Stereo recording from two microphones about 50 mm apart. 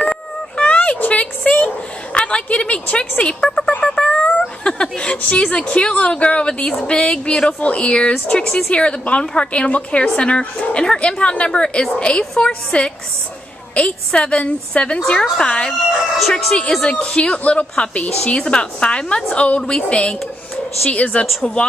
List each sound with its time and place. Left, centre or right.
0.6 s a sound: left
2.1 s a woman's voice: left
3.8 s a sound: centre
4.6 s a woman's voice: centre
15.0 s a woman's voice: centre
15.9 s speech: centre
16.3 s a woman's voice: centre